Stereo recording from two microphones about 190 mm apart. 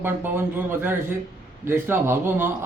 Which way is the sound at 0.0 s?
10° right (ahead or behind).